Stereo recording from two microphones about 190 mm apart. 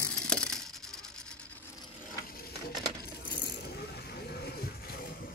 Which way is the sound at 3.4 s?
55° left (ahead or behind).